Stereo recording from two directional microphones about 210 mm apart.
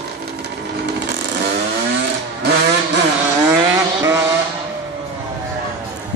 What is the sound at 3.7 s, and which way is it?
Vehicle, 15° right (ahead or behind).